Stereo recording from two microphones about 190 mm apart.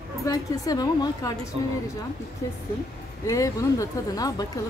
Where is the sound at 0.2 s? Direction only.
20° left (ahead or behind).